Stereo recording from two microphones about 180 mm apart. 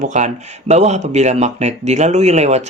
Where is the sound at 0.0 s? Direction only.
40° right (ahead or behind).